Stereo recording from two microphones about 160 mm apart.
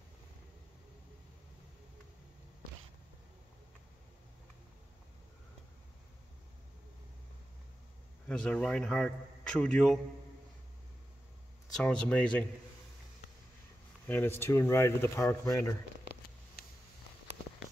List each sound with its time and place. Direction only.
8.3 s a man's voice: 5° left (ahead or behind)
11.7 s speech: 5° left (ahead or behind)
14.0 s speech: 15° left (ahead or behind)